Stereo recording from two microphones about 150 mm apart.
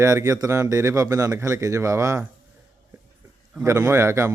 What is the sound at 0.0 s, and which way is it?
A man's voice, 20° right (ahead or behind).